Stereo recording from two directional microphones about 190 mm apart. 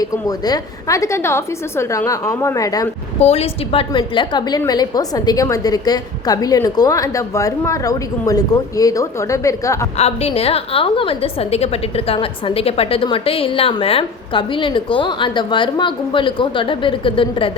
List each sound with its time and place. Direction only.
0.0 s a woman's voice: 20° left (ahead or behind)
3.2 s a woman's voice: 35° left (ahead or behind); by 9.9 s 15° left (ahead or behind)
10.0 s a woman's voice: 35° left (ahead or behind)